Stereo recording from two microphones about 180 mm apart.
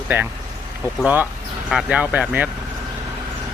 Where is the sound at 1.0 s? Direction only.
10° right (ahead or behind).